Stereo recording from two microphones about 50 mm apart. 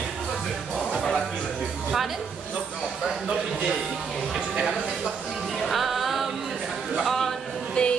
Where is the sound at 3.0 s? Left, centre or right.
Centre.